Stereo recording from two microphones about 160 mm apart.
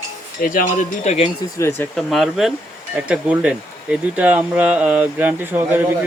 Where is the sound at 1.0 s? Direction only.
45° left (ahead or behind).